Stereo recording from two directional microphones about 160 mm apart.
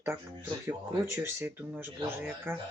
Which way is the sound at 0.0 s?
15° right (ahead or behind).